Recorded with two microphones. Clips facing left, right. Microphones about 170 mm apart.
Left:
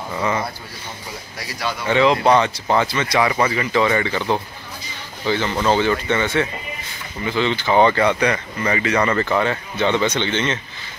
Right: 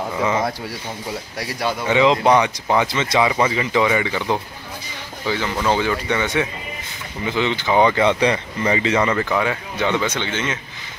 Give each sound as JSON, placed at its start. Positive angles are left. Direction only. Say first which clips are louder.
{"t": 0.2, "sound": "speech", "louder": "right 2 dB", "side_deg": -15}
{"t": 1.6, "sound": "speech", "louder": "even", "side_deg": -20}
{"t": 5.2, "sound": "speech", "louder": "left 2 dB", "side_deg": -5}
{"t": 8.2, "sound": "speech", "louder": "right 1 dB", "side_deg": -25}
{"t": 9.1, "sound": "speech", "louder": "left 1 dB", "side_deg": -10}